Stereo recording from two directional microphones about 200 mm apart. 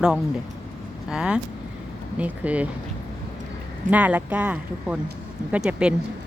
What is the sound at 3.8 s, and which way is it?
Speech, 5° right (ahead or behind).